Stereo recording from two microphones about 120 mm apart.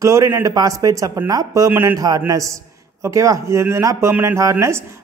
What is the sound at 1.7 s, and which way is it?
Speech, 15° right (ahead or behind).